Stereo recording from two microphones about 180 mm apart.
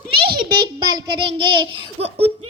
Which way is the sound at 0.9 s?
30° right (ahead or behind).